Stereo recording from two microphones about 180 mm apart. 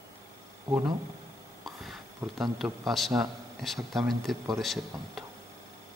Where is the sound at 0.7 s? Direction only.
15° right (ahead or behind).